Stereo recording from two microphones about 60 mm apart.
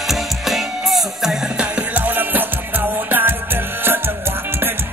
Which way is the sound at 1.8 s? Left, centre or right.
Right.